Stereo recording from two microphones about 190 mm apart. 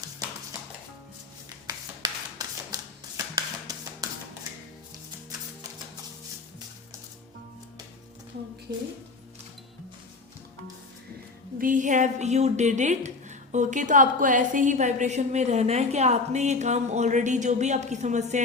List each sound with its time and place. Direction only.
1.6 s hands: 20° right (ahead or behind)
11.5 s a woman's voice: 45° right (ahead or behind)